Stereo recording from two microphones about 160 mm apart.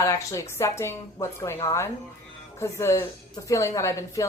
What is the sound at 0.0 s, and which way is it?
A woman's voice, 20° left (ahead or behind).